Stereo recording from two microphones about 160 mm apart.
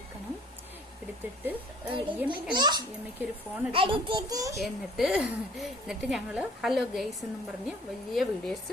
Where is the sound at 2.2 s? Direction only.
5° right (ahead or behind).